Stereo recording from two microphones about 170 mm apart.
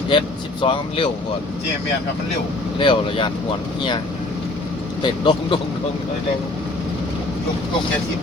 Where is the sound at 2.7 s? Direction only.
30° left (ahead or behind).